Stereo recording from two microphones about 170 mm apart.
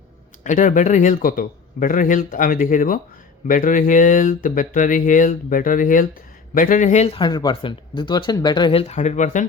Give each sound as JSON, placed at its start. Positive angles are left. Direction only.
{"t": 0.4, "sound": "speech", "side_deg": 45}